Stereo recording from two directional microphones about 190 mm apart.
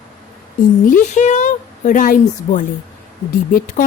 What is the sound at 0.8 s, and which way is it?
A woman's voice, 40° left (ahead or behind).